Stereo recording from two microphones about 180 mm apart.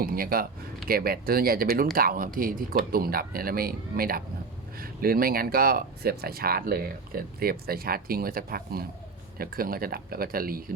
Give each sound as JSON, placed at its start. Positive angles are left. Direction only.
{"t": 0.0, "sound": "speech", "side_deg": -55}